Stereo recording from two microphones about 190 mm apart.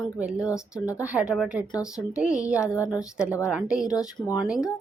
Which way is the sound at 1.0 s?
5° right (ahead or behind).